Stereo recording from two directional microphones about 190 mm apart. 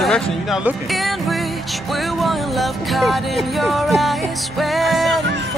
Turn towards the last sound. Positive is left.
turn(degrees=-70)  # may be behind; listen again after turning